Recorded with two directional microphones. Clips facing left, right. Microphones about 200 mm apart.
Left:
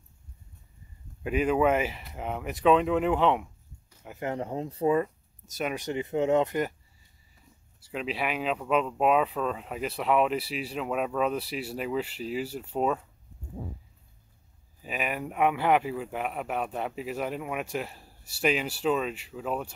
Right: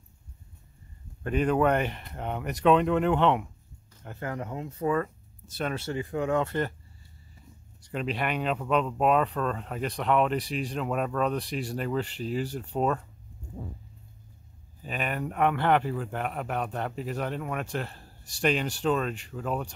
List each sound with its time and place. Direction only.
1.2 s speech: 5° left (ahead or behind)
3.9 s a sound: 10° left (ahead or behind)
4.3 s speech: 30° left (ahead or behind)
4.8 s speech: 15° left (ahead or behind)
7.8 s speech: centre (ahead or behind)
14.8 s speech: 5° left (ahead or behind)